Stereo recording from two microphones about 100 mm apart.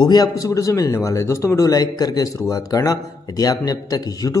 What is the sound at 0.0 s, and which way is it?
Speech, 45° left (ahead or behind).